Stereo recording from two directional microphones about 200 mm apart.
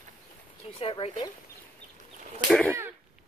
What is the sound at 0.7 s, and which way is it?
Speech, 30° left (ahead or behind).